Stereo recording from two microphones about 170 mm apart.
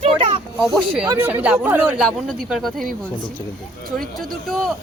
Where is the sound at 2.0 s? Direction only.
Centre (ahead or behind).